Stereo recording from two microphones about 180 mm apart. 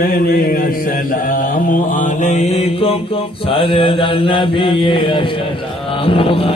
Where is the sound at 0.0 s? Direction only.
55° left (ahead or behind).